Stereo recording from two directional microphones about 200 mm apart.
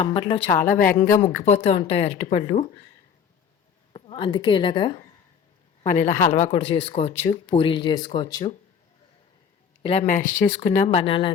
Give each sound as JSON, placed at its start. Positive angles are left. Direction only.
{"t": 0.0, "sound": "speech", "side_deg": 25}
{"t": 0.8, "sound": "speech", "side_deg": 45}
{"t": 3.9, "sound": "a woman's voice", "side_deg": 25}
{"t": 5.8, "sound": "speech", "side_deg": 35}
{"t": 9.8, "sound": "speech", "side_deg": 30}
{"t": 10.8, "sound": "speech", "side_deg": 30}